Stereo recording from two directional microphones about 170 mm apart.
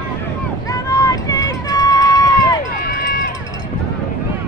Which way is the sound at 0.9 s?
20° left (ahead or behind).